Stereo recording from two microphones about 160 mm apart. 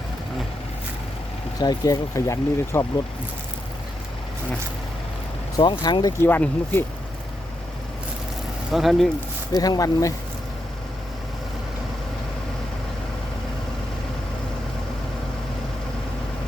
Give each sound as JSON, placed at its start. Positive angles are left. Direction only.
{"t": 1.5, "sound": "speech", "side_deg": 25}
{"t": 5.5, "sound": "speech", "side_deg": 25}
{"t": 6.2, "sound": "speech", "side_deg": 10}
{"t": 8.7, "sound": "speech", "side_deg": 0}
{"t": 9.5, "sound": "speech", "side_deg": 25}